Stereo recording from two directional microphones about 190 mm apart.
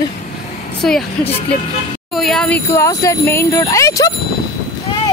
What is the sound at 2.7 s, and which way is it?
Speech, 15° left (ahead or behind).